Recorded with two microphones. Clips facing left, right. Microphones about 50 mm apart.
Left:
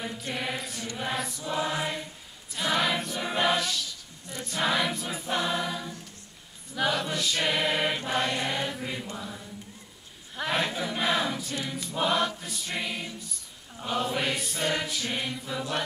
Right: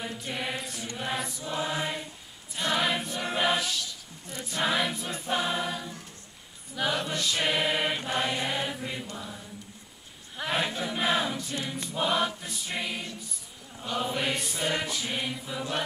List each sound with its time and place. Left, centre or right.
0.0 s choir: centre
8.7 s chant: centre
10.3 s choir: centre